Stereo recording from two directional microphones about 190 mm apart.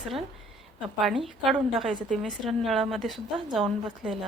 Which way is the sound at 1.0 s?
Centre (ahead or behind).